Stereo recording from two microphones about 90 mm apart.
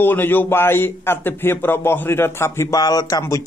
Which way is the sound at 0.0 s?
25° left (ahead or behind).